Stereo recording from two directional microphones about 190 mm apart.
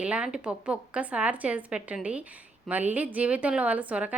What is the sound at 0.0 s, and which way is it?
A woman's voice, 5° right (ahead or behind).